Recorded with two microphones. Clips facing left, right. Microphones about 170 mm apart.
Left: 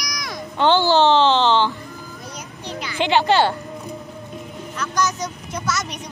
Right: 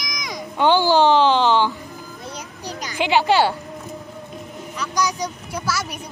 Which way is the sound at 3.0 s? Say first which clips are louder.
Even; 10° right (ahead or behind).